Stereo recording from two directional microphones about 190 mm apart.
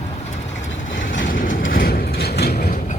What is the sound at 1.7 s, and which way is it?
Mechanisms, 50° left (ahead or behind).